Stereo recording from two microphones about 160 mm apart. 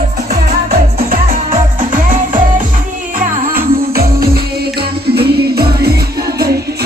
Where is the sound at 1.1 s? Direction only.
55° right (ahead or behind).